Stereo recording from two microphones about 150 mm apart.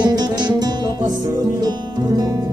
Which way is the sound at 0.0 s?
25° right (ahead or behind).